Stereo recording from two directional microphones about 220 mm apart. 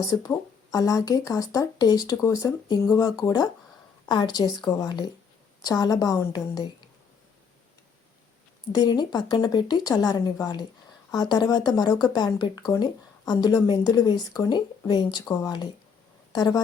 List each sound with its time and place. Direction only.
0.1 s speech: 15° left (ahead or behind)
8.7 s a woman's voice: 20° left (ahead or behind)